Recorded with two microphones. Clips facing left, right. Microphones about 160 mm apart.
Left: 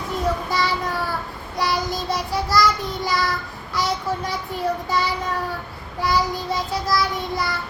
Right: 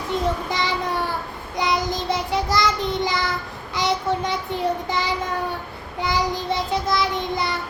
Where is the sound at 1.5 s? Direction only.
20° right (ahead or behind).